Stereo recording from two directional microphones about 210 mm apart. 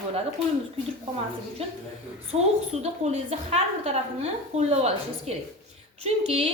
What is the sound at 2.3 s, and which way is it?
A woman's voice, 30° right (ahead or behind).